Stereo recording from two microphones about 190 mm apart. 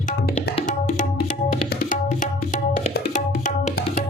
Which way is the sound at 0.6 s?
40° left (ahead or behind).